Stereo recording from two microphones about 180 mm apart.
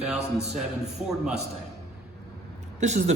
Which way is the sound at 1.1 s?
5° right (ahead or behind).